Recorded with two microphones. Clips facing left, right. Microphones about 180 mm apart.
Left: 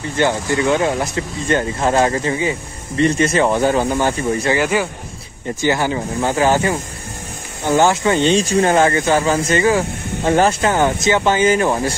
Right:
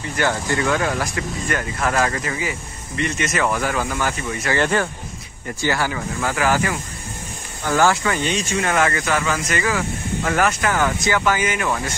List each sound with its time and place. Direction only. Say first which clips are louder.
0.2 s speech: left 4 dB; 20° left (ahead or behind)
4.6 s speech: left 2 dB; 10° left (ahead or behind)
5.6 s speech: left 4 dB; 20° left (ahead or behind)